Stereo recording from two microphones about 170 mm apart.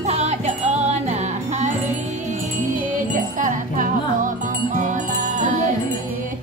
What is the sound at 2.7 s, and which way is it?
Music, 50° right (ahead or behind).